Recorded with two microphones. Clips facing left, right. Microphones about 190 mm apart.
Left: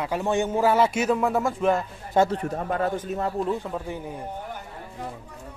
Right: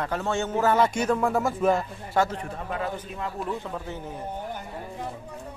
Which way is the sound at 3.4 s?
15° left (ahead or behind).